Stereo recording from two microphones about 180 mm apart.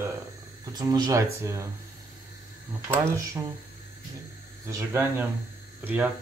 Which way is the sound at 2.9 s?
15° right (ahead or behind).